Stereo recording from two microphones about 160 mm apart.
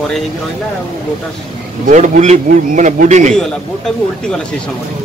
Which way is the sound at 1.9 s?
50° right (ahead or behind).